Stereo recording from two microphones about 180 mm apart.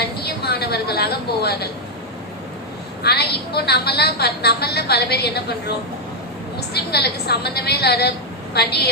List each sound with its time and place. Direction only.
0.2 s a woman's voice: 60° left (ahead or behind)
3.0 s a woman's voice: 65° left (ahead or behind)